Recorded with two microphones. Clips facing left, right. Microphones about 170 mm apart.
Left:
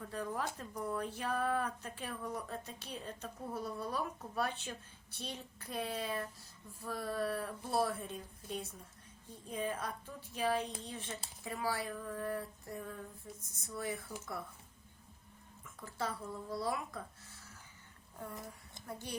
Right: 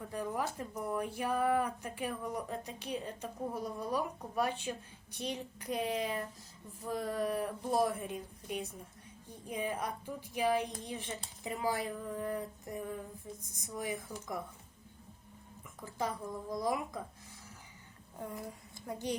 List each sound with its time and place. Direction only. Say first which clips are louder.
0.1 s speech: right 3 dB; 10° right (ahead or behind)
15.8 s speech: right 3 dB; 15° right (ahead or behind)
18.9 s speech: right 8 dB; 20° right (ahead or behind)